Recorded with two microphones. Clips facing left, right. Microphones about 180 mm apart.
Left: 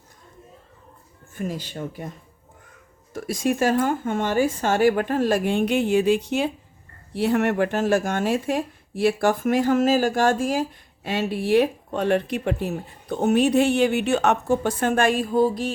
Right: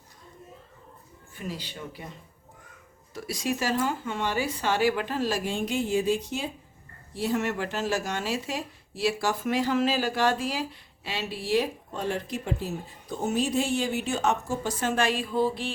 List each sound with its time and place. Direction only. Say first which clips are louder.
1.4 s speech: left 7 dB; 45° left (ahead or behind)